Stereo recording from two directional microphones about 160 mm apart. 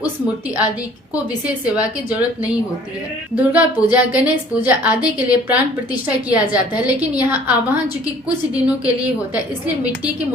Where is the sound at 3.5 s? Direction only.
10° right (ahead or behind).